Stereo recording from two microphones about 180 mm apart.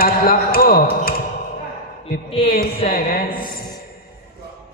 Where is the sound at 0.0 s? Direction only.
55° left (ahead or behind).